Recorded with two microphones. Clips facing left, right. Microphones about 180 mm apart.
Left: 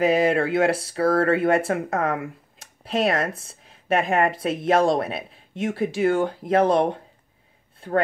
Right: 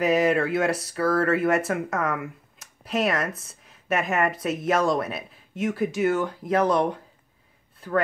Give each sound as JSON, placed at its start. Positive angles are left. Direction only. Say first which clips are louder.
{"t": 0.0, "sound": "speech", "louder": "left 2 dB", "side_deg": 30}